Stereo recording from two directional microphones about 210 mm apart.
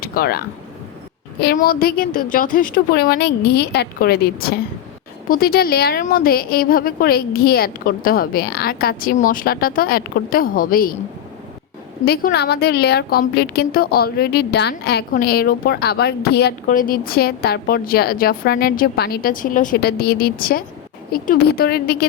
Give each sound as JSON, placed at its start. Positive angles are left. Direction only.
{"t": 0.0, "sound": "a woman's voice", "side_deg": 45}
{"t": 12.0, "sound": "a woman's voice", "side_deg": 50}